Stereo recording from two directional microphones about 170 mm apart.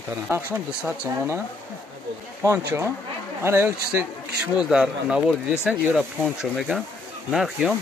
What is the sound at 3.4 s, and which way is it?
Speech, 15° right (ahead or behind).